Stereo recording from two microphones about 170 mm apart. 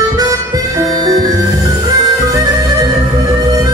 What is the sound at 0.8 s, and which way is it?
Bagpipes, 20° right (ahead or behind).